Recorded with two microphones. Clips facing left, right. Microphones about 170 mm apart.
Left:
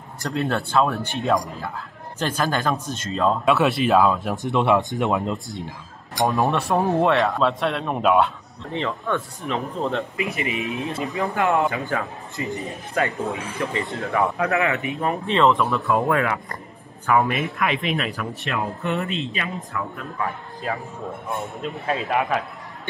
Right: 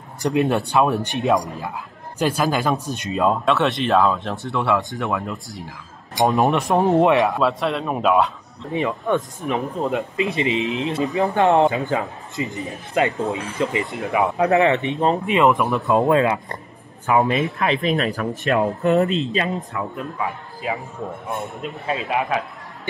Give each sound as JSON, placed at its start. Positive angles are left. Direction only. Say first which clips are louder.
{"t": 0.2, "sound": "speech", "louder": "right 5 dB", "side_deg": -15}
{"t": 2.1, "sound": "a man's voice", "louder": "right 3 dB", "side_deg": -5}
{"t": 2.9, "sound": "speech", "louder": "even", "side_deg": -15}
{"t": 3.4, "sound": "speech", "louder": "left 1 dB", "side_deg": 0}
{"t": 6.1, "sound": "speech", "louder": "right 3 dB", "side_deg": -20}
{"t": 7.3, "sound": "a man's voice", "louder": "right 1 dB", "side_deg": 0}
{"t": 8.7, "sound": "speech", "louder": "right 4 dB", "side_deg": -15}
{"t": 11.1, "sound": "speech", "louder": "right 5 dB", "side_deg": -30}
{"t": 14.5, "sound": "speech", "louder": "right 6 dB", "side_deg": -30}
{"t": 15.0, "sound": "speech", "louder": "right 2 dB", "side_deg": -15}
{"t": 17.6, "sound": "speech", "louder": "right 4 dB", "side_deg": -35}
{"t": 19.7, "sound": "speech", "louder": "right 3 dB", "side_deg": -20}
{"t": 20.6, "sound": "a man's voice", "louder": "right 2 dB", "side_deg": -5}